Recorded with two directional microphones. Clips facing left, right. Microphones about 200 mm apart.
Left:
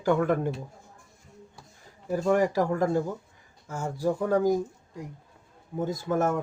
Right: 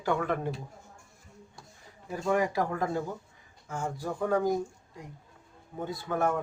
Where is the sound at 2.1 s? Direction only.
40° left (ahead or behind).